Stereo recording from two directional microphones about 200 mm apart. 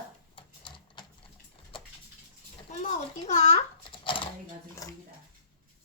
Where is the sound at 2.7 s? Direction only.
35° left (ahead or behind).